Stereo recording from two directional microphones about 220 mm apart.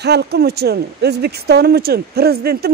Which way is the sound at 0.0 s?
50° right (ahead or behind).